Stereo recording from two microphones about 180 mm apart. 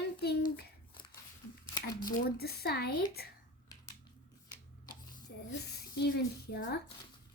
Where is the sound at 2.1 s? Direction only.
60° left (ahead or behind).